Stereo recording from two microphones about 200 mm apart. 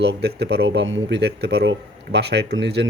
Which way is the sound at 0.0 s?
55° right (ahead or behind).